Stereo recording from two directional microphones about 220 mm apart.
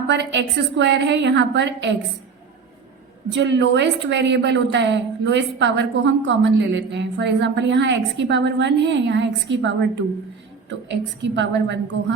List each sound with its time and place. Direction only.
0.1 s a woman's voice: 55° right (ahead or behind)
3.3 s a woman's voice: 55° right (ahead or behind)